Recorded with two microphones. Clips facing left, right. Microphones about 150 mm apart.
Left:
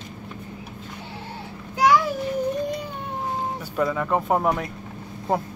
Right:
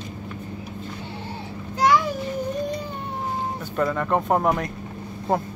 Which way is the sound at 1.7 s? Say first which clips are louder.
Left 1 dB; 5° left (ahead or behind).